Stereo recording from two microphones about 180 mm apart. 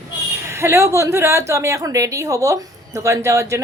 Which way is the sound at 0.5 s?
15° right (ahead or behind).